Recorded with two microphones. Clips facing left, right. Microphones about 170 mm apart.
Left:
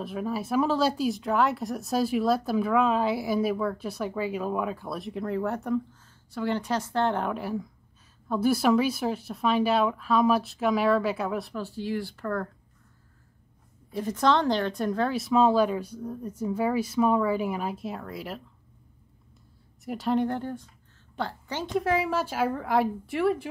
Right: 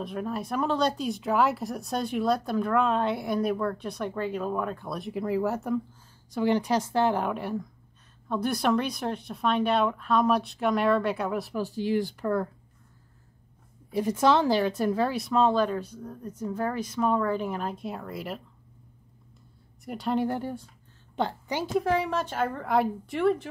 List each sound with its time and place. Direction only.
0.0 s speech: 5° left (ahead or behind)
6.3 s speech: 15° right (ahead or behind)
11.5 s speech: 15° right (ahead or behind)
13.9 s speech: 10° right (ahead or behind)
19.8 s a woman's voice: centre (ahead or behind); by 21.6 s 15° right (ahead or behind)
21.7 s speech: centre (ahead or behind)